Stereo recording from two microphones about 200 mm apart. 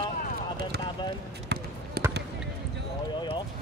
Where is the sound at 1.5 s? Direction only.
55° right (ahead or behind).